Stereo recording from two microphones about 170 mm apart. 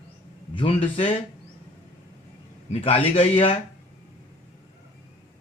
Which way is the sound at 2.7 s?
35° left (ahead or behind).